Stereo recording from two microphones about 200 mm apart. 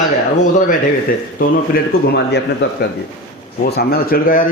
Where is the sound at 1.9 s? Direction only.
50° left (ahead or behind).